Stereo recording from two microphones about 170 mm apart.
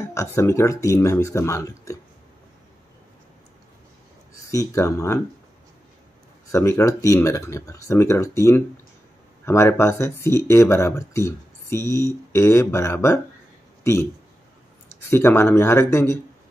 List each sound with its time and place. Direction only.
0.0 s speech: 15° left (ahead or behind)
4.5 s speech: 20° left (ahead or behind)
6.5 s speech: 15° left (ahead or behind)
15.0 s speech: 15° left (ahead or behind)